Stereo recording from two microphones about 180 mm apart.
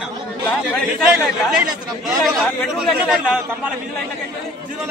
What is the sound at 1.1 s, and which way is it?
Speech, 5° right (ahead or behind).